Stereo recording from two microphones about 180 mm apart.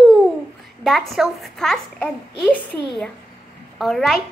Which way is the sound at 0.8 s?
Centre (ahead or behind).